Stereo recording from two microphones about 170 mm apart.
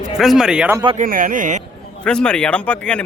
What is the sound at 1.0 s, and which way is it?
Speech, 55° right (ahead or behind).